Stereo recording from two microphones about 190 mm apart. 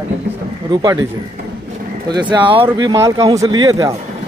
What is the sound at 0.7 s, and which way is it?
Speech, 20° right (ahead or behind).